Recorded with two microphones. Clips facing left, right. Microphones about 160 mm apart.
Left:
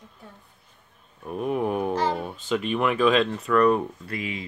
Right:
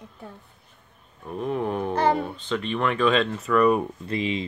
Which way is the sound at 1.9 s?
60° right (ahead or behind).